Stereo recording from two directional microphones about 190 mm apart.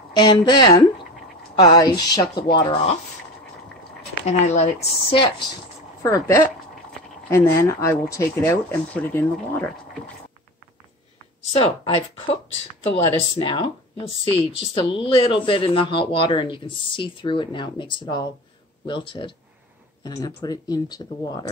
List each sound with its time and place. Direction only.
0.1 s speech: 20° left (ahead or behind)
4.3 s speech: 35° left (ahead or behind)
6.0 s speech: 15° left (ahead or behind)
11.5 s speech: 30° left (ahead or behind)